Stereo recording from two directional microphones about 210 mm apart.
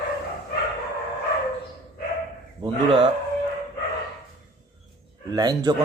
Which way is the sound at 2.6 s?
25° right (ahead or behind).